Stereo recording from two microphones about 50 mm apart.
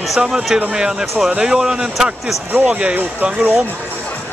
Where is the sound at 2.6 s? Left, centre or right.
Right.